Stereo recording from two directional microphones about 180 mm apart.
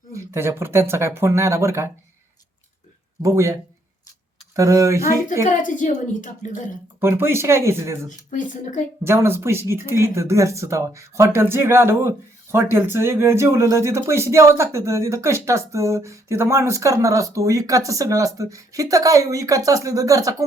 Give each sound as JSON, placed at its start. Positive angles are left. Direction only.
{"t": 0.1, "sound": "speech", "side_deg": -15}
{"t": 3.2, "sound": "speech", "side_deg": -15}
{"t": 5.6, "sound": "a woman's voice", "side_deg": 45}
{"t": 7.0, "sound": "speech", "side_deg": -15}
{"t": 8.3, "sound": "a woman's voice", "side_deg": 45}
{"t": 9.0, "sound": "speech", "side_deg": -15}